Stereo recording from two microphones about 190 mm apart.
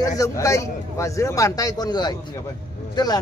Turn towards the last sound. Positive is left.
turn(degrees=20)  # may be behind; listen again after turning